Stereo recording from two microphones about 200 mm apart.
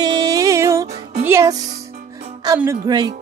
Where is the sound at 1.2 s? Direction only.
15° right (ahead or behind).